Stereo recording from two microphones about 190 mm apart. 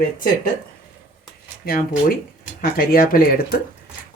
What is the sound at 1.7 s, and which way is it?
Speech, 50° left (ahead or behind).